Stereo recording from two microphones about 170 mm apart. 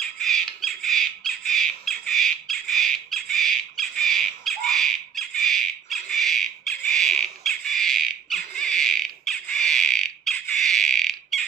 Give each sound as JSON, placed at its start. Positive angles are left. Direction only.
{"t": 0.2, "sound": "squawk", "side_deg": 0}